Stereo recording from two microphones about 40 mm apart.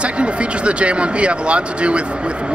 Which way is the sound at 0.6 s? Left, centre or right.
Right.